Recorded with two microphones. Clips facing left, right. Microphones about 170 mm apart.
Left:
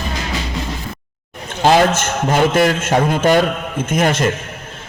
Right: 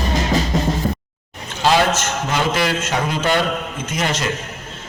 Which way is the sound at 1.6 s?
50° left (ahead or behind).